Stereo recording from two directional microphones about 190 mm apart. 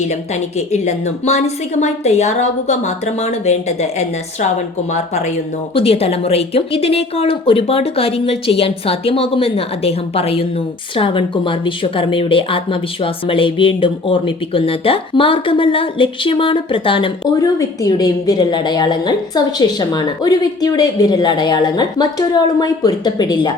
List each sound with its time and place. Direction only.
0.7 s a woman's voice: 35° left (ahead or behind)